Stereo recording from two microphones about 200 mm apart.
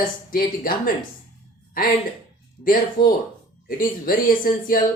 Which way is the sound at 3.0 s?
20° left (ahead or behind).